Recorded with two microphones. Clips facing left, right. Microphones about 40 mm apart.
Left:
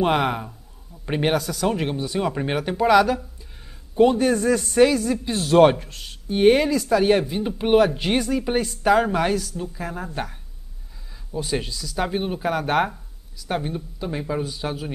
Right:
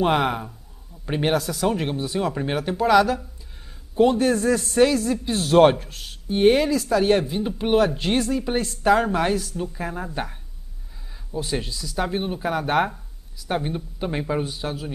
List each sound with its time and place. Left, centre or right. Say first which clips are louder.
0.0 s a man's voice: even; centre
2.1 s a man's voice: left 1 dB; centre
11.3 s a man's voice: left 1 dB; centre
13.7 s speech: right 1 dB; right
14.6 s speech: left 1 dB; centre